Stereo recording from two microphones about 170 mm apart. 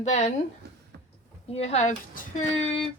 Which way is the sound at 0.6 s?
75° right (ahead or behind).